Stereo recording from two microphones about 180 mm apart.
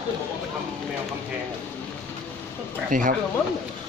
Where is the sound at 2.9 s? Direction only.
50° right (ahead or behind).